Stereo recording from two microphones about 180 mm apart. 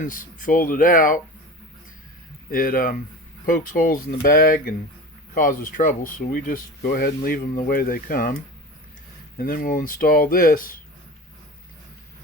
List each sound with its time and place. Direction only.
0.0 s speech: 50° left (ahead or behind)
2.5 s speech: 55° left (ahead or behind)
9.4 s speech: 50° left (ahead or behind)